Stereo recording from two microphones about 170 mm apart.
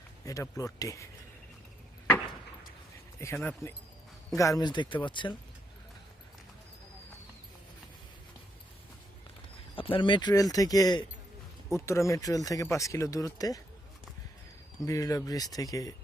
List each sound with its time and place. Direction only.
0.3 s speech: 20° left (ahead or behind)
3.2 s speech: 15° left (ahead or behind)
4.4 s speech: 20° left (ahead or behind)
9.7 s speech: 30° left (ahead or behind)
14.8 s speech: 20° left (ahead or behind)